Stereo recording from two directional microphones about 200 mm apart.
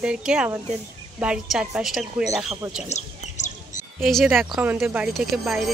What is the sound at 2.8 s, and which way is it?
Chirp, 35° left (ahead or behind).